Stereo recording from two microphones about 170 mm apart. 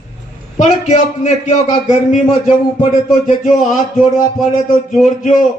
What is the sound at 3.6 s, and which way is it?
Speech, 45° left (ahead or behind).